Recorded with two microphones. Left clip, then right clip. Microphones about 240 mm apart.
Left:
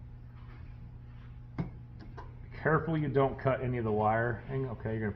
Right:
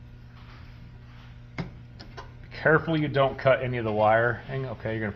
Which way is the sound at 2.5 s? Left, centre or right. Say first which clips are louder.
Right 8 dB; right.